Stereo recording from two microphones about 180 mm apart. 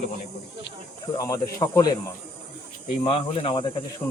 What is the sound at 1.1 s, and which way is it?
Speech, 20° left (ahead or behind).